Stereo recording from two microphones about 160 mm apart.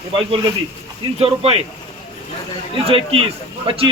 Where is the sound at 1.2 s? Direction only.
40° right (ahead or behind).